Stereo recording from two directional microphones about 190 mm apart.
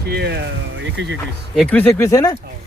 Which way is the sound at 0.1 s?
60° right (ahead or behind).